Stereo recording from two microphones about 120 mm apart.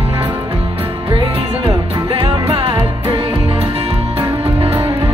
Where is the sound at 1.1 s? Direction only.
45° right (ahead or behind).